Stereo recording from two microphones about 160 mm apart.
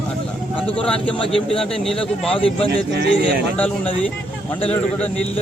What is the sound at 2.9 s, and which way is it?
Speech, 90° right.